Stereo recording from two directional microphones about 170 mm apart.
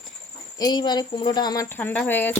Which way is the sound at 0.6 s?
25° left (ahead or behind).